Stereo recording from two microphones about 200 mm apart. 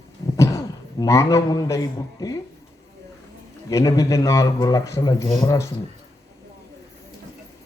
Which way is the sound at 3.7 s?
15° left (ahead or behind).